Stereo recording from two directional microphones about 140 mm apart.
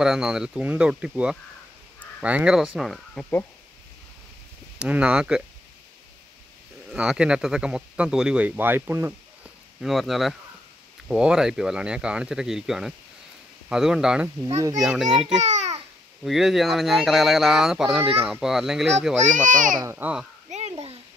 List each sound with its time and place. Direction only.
0.0 s speech: 5° right (ahead or behind)
4.7 s speech: 10° right (ahead or behind)
6.9 s speech: 5° right (ahead or behind)
9.8 s speech: centre (ahead or behind)
14.4 s a child's voice: 25° right (ahead or behind)
14.9 s speech: centre (ahead or behind)
15.4 s babbling: 55° right (ahead or behind)
16.3 s speech: centre (ahead or behind)
19.3 s a child's voice: 65° right (ahead or behind)
20.0 s speech: 10° right (ahead or behind)
20.4 s a sound: 55° right (ahead or behind)